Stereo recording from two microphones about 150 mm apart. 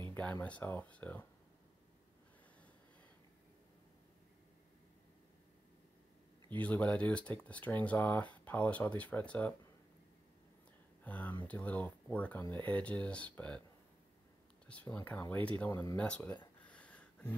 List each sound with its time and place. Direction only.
0.1 s speech: 10° left (ahead or behind)
6.6 s speech: 10° left (ahead or behind)
11.1 s speech: 10° left (ahead or behind)
14.7 s speech: 10° left (ahead or behind)
16.6 s a sound: 10° left (ahead or behind)